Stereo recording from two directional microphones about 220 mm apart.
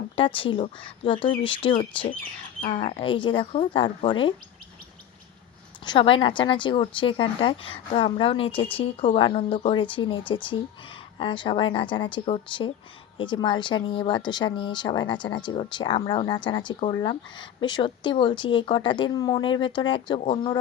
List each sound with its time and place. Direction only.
0.2 s speech: 25° left (ahead or behind)
5.8 s speech: 20° left (ahead or behind)